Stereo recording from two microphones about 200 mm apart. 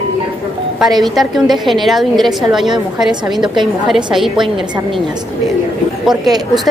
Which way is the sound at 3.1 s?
20° right (ahead or behind).